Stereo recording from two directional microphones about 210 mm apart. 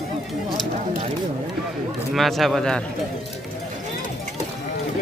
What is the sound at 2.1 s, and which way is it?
Speech, centre (ahead or behind).